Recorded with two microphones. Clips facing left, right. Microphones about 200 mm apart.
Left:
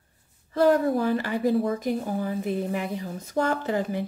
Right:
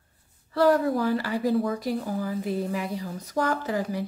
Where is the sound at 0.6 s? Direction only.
20° left (ahead or behind).